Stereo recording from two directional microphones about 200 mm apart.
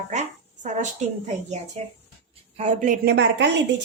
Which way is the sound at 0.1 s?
35° right (ahead or behind).